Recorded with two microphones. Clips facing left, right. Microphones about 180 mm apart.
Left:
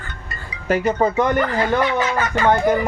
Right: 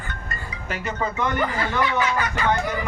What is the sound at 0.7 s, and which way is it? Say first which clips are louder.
Speech: left 10 dB; 45° left (ahead or behind).